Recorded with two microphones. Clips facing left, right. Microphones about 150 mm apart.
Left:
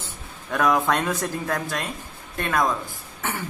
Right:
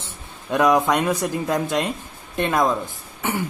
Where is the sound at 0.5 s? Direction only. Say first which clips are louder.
Right 4 dB; 20° right (ahead or behind).